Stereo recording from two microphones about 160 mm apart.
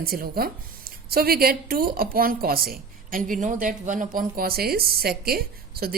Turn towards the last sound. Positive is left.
turn(degrees=-70)  # may be behind; listen again after turning